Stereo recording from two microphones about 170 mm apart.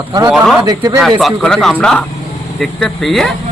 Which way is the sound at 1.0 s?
Centre (ahead or behind).